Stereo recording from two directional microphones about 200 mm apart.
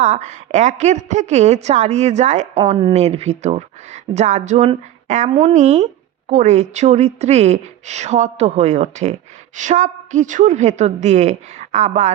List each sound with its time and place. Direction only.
0.0 s speech: 35° right (ahead or behind)